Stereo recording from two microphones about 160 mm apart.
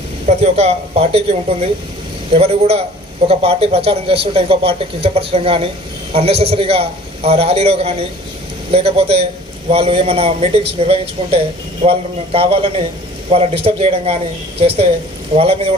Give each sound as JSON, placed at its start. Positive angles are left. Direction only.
{"t": 0.3, "sound": "speech", "side_deg": -40}